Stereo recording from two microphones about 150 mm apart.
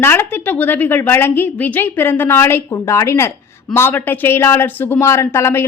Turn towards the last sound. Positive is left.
turn(degrees=15)  # may be behind; listen again after turning